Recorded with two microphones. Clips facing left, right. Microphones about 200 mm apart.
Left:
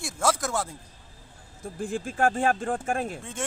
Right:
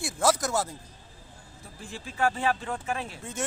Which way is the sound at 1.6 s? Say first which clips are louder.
Left 11 dB; 50° left (ahead or behind).